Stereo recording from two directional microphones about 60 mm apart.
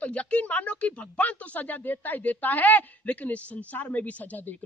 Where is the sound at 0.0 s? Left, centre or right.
Left.